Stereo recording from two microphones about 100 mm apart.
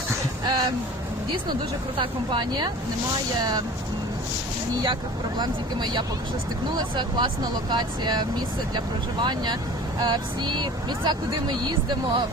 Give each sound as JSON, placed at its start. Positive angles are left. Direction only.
{"t": 0.4, "sound": "a sound", "side_deg": -45}
{"t": 2.0, "sound": "speech", "side_deg": -50}
{"t": 5.4, "sound": "speech", "side_deg": -45}